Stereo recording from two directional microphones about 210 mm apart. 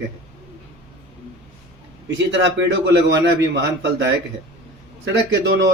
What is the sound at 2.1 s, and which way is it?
A man's voice, 60° right (ahead or behind).